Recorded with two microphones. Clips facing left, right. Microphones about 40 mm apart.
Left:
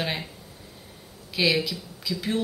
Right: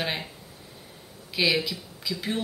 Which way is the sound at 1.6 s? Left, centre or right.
Centre.